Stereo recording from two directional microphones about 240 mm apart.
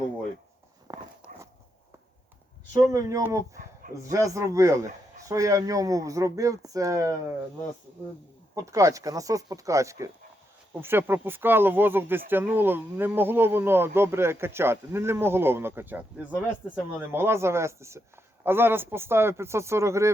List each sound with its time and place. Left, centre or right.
0.9 s a sound: centre
2.7 s speech: centre
8.6 s speech: centre